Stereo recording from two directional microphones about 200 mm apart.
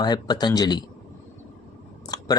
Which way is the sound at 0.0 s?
20° left (ahead or behind).